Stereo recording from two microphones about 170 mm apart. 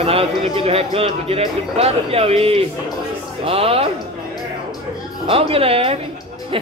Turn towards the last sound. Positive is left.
turn(degrees=-35)  # may be behind; listen again after turning